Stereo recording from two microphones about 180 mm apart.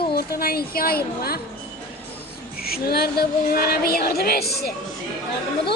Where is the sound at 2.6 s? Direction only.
60° left (ahead or behind).